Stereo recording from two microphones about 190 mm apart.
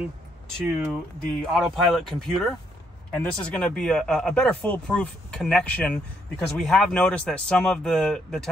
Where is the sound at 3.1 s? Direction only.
5° left (ahead or behind).